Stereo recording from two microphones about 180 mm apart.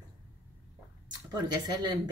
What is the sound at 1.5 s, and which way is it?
Speech, 20° right (ahead or behind).